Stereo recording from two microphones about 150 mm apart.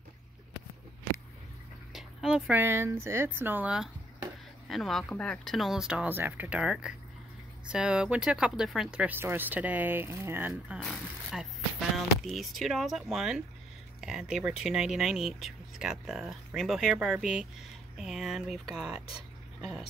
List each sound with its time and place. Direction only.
1.9 s dog: centre (ahead or behind)
2.5 s speech: 15° right (ahead or behind)
10.5 s speech: centre (ahead or behind)